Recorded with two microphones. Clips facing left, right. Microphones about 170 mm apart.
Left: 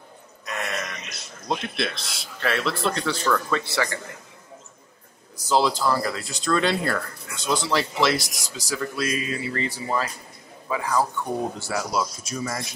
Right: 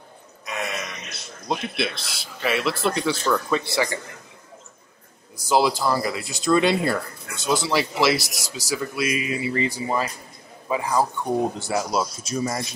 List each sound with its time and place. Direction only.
0.5 s a sound: 5° right (ahead or behind)
1.5 s speech: 5° right (ahead or behind)
5.5 s speech: 10° right (ahead or behind)